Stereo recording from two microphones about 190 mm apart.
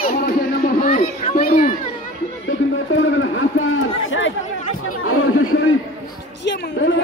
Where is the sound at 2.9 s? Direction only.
90° left.